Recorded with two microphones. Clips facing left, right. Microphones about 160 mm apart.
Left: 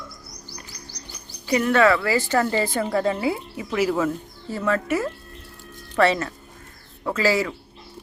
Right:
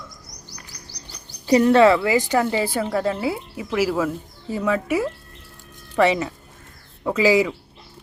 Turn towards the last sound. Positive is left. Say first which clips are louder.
# right 4 dB
turn(degrees=-15)  # may be behind; listen again after turning